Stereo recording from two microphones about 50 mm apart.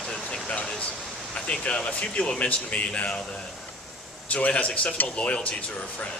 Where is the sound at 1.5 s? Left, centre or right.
Left.